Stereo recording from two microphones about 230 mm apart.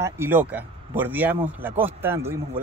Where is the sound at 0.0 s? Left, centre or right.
Centre.